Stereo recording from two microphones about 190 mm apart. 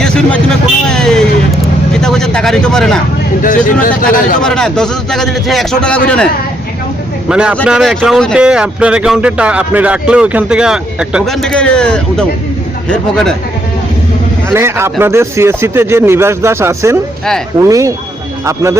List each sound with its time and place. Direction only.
0.9 s vehicle: 5° left (ahead or behind)
3.4 s speech: 45° left (ahead or behind)
4.4 s speech: 5° left (ahead or behind)
7.3 s a man's voice: 5° right (ahead or behind)
14.5 s speech: 15° right (ahead or behind)